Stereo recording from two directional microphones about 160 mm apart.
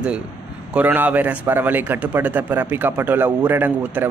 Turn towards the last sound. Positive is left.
turn(degrees=-10)  # may be behind; listen again after turning